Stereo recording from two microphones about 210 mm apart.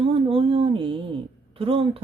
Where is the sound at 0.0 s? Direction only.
25° right (ahead or behind).